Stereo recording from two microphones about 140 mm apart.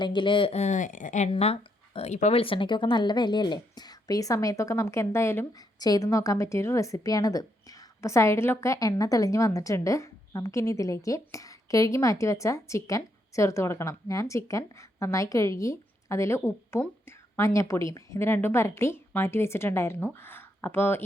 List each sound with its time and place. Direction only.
0.0 s speech: 35° left (ahead or behind); by 1.3 s 60° left (ahead or behind)
1.3 s a woman's voice: 45° left (ahead or behind); by 21.0 s 15° left (ahead or behind)